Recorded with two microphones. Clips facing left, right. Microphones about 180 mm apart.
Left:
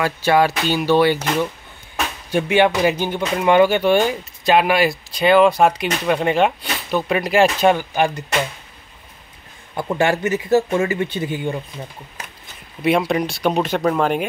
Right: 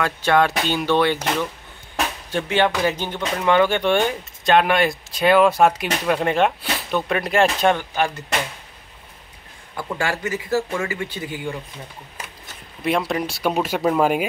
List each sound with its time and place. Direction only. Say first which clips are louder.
0.0 s speech: left 2 dB; 5° left (ahead or behind)
9.8 s speech: left 6 dB; 20° left (ahead or behind)
12.8 s speech: left 4 dB; centre (ahead or behind)